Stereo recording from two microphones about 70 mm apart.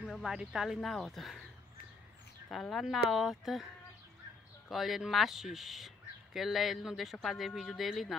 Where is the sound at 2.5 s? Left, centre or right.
Centre.